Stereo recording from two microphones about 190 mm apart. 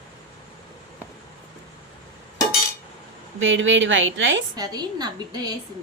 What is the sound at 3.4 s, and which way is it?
A woman's voice, 80° right.